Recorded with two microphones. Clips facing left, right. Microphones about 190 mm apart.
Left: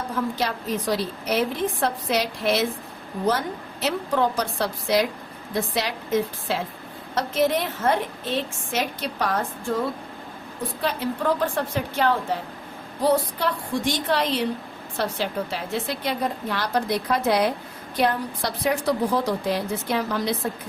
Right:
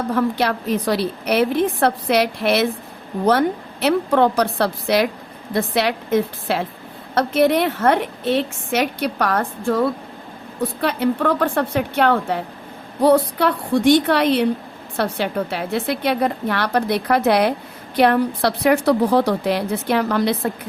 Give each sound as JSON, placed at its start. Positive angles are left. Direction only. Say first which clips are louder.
{"t": 0.1, "sound": "a woman's voice", "louder": "right 7 dB", "side_deg": -65}